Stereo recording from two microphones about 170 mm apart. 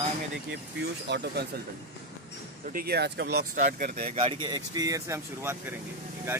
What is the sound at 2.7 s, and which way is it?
Speech, 65° right (ahead or behind).